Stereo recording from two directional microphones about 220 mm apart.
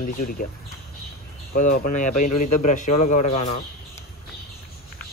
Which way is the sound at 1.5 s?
40° left (ahead or behind).